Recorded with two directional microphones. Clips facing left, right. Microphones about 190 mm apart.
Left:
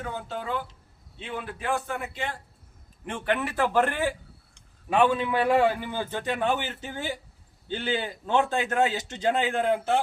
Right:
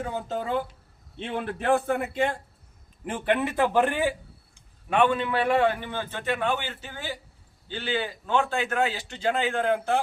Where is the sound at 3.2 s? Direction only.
20° right (ahead or behind).